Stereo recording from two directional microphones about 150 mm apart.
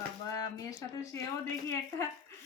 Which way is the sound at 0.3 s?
25° left (ahead or behind).